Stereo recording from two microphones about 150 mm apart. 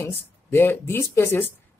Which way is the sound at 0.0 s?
15° left (ahead or behind).